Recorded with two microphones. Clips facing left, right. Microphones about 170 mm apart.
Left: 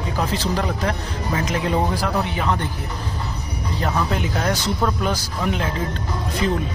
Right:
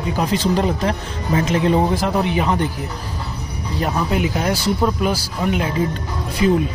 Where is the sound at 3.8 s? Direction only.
10° right (ahead or behind).